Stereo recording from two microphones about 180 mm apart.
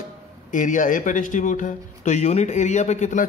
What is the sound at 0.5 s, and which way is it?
Speech, 45° left (ahead or behind).